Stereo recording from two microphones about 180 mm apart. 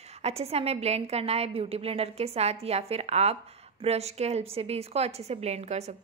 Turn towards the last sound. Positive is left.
turn(degrees=-35)  # may be behind; listen again after turning